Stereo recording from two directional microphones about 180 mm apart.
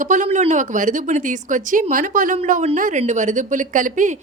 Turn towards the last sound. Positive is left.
turn(degrees=-45)  # may be behind; listen again after turning